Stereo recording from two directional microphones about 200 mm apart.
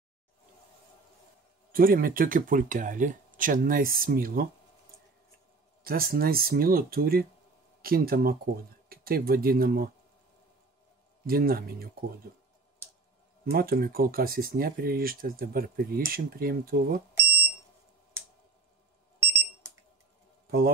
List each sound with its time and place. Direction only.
1.7 s speech: 45° right (ahead or behind)
5.9 s speech: 45° right (ahead or behind)
11.2 s speech: 45° right (ahead or behind)
13.5 s speech: 50° right (ahead or behind)
19.1 s alarm: 15° right (ahead or behind)